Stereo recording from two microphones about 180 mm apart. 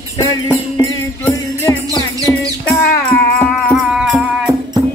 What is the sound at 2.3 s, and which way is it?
Music, 5° left (ahead or behind).